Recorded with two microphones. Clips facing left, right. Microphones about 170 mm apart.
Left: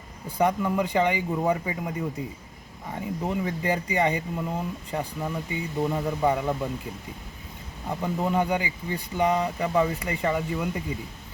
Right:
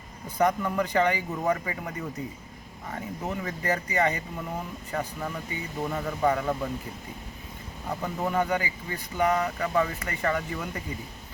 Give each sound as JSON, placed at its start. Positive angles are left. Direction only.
{"t": 0.3, "sound": "speech", "side_deg": 15}
{"t": 7.9, "sound": "speech", "side_deg": 15}